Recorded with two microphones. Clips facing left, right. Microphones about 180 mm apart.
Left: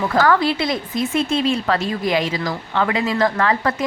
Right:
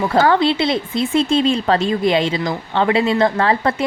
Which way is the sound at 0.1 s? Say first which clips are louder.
Right 2 dB; 25° right (ahead or behind).